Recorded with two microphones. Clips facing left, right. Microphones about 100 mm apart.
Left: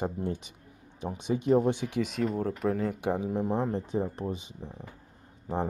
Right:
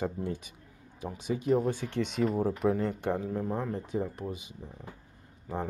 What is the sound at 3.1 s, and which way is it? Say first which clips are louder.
Speech: left 2 dB; 15° left (ahead or behind).